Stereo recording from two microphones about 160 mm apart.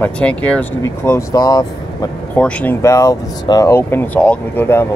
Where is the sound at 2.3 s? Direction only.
10° left (ahead or behind).